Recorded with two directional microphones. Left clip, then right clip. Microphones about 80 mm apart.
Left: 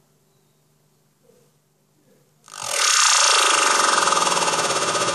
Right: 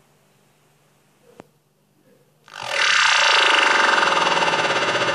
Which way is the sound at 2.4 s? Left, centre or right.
Left.